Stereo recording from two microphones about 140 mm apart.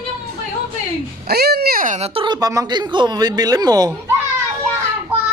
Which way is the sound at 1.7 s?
80° right.